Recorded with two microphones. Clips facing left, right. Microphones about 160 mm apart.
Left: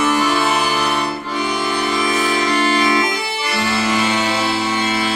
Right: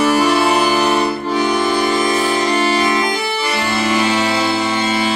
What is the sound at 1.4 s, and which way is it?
Music, 45° right (ahead or behind).